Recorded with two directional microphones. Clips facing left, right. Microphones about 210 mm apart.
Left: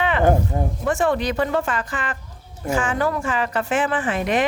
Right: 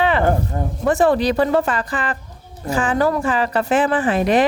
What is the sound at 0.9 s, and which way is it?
A woman's voice, 35° right (ahead or behind).